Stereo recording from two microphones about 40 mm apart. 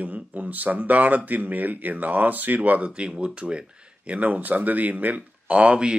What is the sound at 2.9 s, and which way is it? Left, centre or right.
Speech, right.